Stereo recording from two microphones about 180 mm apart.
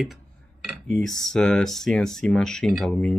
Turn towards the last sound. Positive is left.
turn(degrees=0)  # may be behind; listen again after turning